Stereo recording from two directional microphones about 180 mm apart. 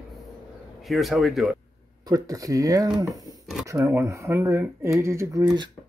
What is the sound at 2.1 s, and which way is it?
Speech, 20° right (ahead or behind).